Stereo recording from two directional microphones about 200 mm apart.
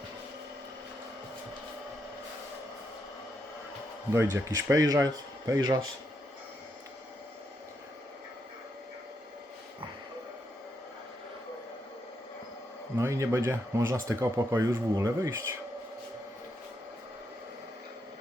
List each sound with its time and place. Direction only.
4.1 s speech: 15° right (ahead or behind)
13.0 s speech: 15° right (ahead or behind)